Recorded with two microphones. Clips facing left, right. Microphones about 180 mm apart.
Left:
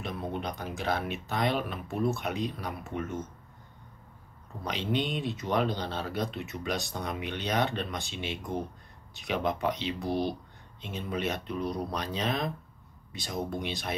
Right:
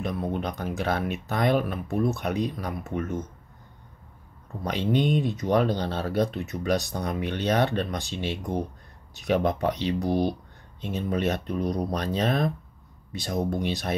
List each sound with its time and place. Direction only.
0.0 s speech: 45° right (ahead or behind)
4.6 s speech: 45° right (ahead or behind)